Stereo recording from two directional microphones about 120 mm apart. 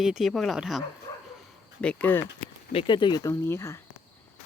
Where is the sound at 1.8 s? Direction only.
10° left (ahead or behind).